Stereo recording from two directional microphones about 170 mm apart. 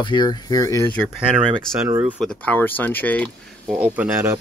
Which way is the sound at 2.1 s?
5° left (ahead or behind).